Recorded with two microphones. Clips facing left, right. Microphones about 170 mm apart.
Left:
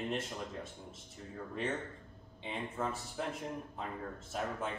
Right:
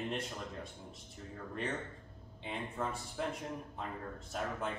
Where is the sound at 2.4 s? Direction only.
Centre (ahead or behind).